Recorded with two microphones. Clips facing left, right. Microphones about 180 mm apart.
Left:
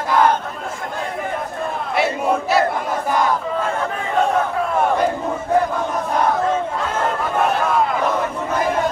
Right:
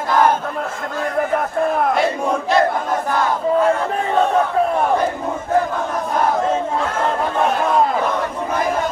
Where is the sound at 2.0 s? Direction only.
5° left (ahead or behind).